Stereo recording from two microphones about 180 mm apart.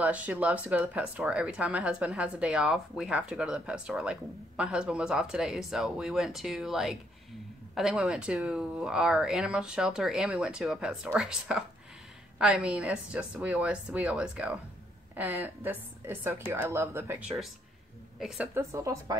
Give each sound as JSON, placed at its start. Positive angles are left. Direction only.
{"t": 0.0, "sound": "speech", "side_deg": -10}
{"t": 18.2, "sound": "speech", "side_deg": -10}